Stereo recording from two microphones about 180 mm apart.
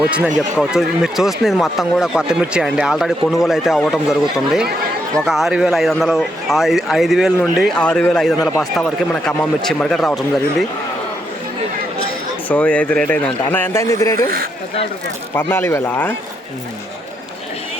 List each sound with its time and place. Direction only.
0.6 s speech: 5° right (ahead or behind)
12.5 s speech: 5° left (ahead or behind)
15.4 s speech: 10° left (ahead or behind)